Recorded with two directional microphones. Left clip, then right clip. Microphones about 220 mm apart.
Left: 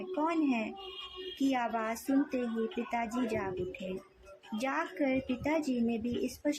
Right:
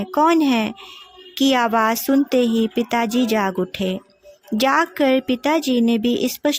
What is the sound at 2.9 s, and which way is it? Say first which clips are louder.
Speech: right 14 dB; 40° right (ahead or behind).